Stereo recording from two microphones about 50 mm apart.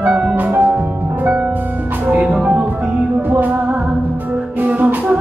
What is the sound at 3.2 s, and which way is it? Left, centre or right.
Music, right.